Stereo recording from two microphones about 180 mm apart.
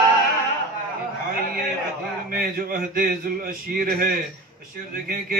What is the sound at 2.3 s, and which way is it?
A man's voice, 55° right (ahead or behind).